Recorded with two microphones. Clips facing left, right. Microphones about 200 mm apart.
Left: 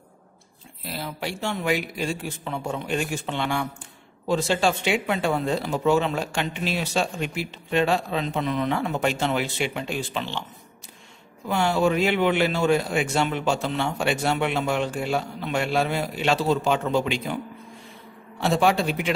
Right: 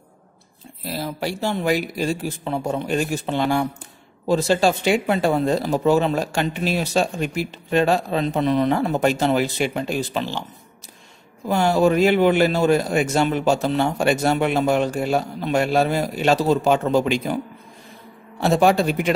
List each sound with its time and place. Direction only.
0.9 s speech: 40° right (ahead or behind)
11.4 s speech: 40° right (ahead or behind)
18.4 s speech: 40° right (ahead or behind)